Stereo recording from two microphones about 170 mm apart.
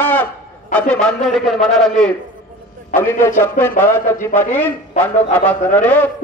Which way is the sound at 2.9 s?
15° left (ahead or behind).